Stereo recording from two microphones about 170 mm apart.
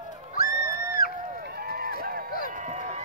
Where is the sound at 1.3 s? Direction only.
65° right (ahead or behind).